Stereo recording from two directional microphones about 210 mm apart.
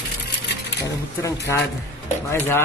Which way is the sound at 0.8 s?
15° left (ahead or behind).